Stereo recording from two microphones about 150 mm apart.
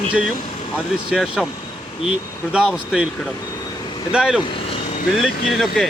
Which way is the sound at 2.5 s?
5° right (ahead or behind).